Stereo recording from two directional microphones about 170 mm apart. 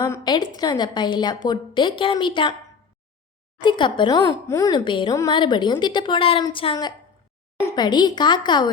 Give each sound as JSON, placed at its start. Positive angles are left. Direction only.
{"t": 0.0, "sound": "a sound", "side_deg": 25}
{"t": 0.5, "sound": "a woman's voice", "side_deg": 25}
{"t": 3.6, "sound": "a woman's voice", "side_deg": 25}